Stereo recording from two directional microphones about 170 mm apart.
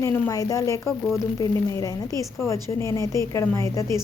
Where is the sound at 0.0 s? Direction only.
20° left (ahead or behind).